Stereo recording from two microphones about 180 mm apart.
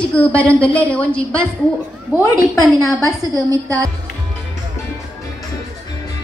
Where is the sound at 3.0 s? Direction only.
20° right (ahead or behind).